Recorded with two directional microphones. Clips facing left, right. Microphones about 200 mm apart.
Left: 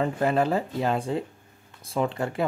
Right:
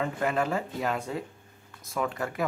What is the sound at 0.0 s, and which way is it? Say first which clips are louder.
Speech: left 4 dB; 35° left (ahead or behind).